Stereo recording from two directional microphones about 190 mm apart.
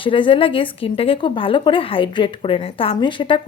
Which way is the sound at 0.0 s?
25° left (ahead or behind).